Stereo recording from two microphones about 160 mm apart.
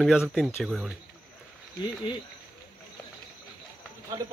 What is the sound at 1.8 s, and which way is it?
Cricket, 30° left (ahead or behind).